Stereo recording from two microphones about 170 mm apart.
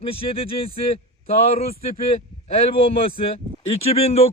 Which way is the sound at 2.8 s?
35° left (ahead or behind).